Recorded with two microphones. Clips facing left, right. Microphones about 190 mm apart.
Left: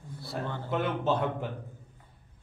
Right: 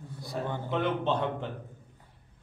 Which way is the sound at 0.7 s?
5° left (ahead or behind).